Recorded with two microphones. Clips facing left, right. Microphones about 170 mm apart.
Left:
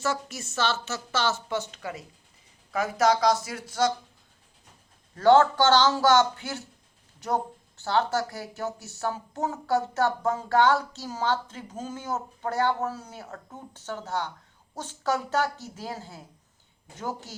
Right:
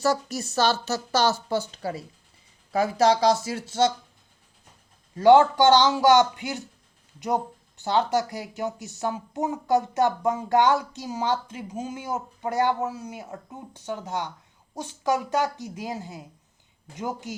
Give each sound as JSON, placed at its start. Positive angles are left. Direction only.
{"t": 0.0, "sound": "speech", "side_deg": -40}
{"t": 5.1, "sound": "speech", "side_deg": -15}
{"t": 7.8, "sound": "speech", "side_deg": -20}